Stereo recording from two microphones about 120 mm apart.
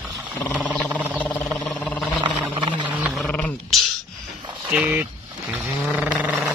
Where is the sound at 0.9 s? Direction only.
10° left (ahead or behind).